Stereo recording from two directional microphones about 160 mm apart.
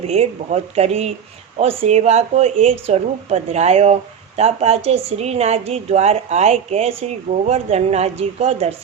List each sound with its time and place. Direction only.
0.1 s a woman's voice: 40° right (ahead or behind)